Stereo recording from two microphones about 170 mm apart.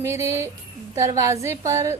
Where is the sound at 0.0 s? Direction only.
15° right (ahead or behind).